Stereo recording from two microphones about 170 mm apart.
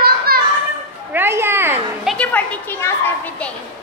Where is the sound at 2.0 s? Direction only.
5° left (ahead or behind).